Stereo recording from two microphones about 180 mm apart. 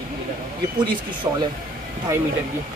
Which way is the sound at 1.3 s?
20° right (ahead or behind).